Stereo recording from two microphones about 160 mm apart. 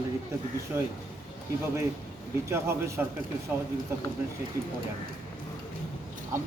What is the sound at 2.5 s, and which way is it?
Speech, 15° right (ahead or behind).